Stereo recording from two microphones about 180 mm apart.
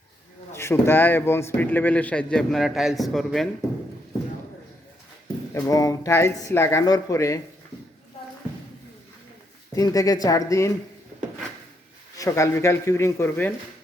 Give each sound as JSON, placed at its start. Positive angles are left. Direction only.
{"t": 0.5, "sound": "a man's voice", "side_deg": 15}
{"t": 5.5, "sound": "a man's voice", "side_deg": 20}
{"t": 9.7, "sound": "speech", "side_deg": 20}
{"t": 12.1, "sound": "a man's voice", "side_deg": 20}